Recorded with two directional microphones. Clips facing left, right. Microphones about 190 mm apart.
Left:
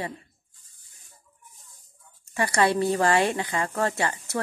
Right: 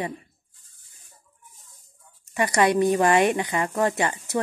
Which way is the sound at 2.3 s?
20° right (ahead or behind).